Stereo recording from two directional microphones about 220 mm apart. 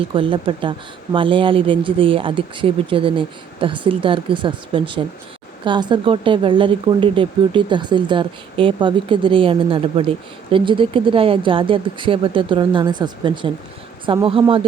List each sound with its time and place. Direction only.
0.0 s speech: 25° right (ahead or behind)